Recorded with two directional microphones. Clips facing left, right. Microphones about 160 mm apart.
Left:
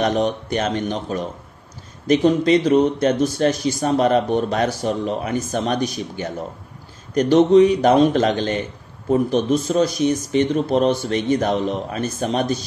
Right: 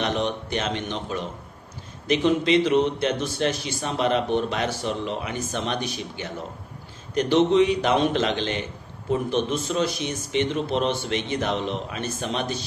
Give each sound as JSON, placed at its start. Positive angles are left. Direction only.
{"t": 0.0, "sound": "a man's voice", "side_deg": 45}